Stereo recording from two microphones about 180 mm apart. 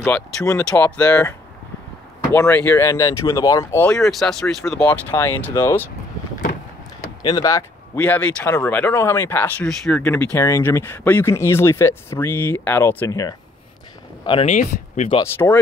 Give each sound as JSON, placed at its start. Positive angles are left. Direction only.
{"t": 0.0, "sound": "speech", "side_deg": 10}
{"t": 2.3, "sound": "speech", "side_deg": 10}
{"t": 7.2, "sound": "speech", "side_deg": 20}
{"t": 14.5, "sound": "speech", "side_deg": 45}
{"t": 15.3, "sound": "speech", "side_deg": 15}